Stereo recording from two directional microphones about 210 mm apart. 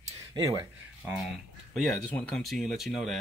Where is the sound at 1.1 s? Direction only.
Centre (ahead or behind).